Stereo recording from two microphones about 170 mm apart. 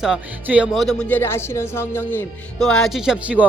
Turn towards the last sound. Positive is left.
turn(degrees=-10)  # may be behind; listen again after turning